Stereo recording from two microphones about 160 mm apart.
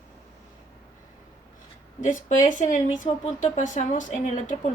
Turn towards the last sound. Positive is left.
turn(degrees=50)  # may be behind; listen again after turning